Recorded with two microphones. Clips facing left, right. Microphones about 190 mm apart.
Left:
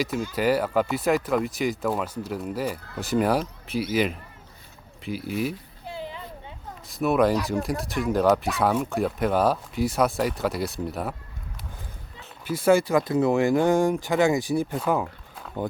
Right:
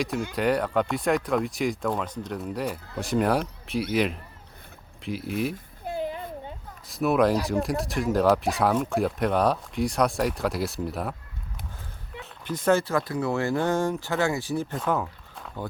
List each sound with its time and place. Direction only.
0.3 s speech: 5° left (ahead or behind)
5.8 s a sound: 50° right (ahead or behind)
6.8 s speech: centre (ahead or behind)
12.2 s speech: 10° left (ahead or behind)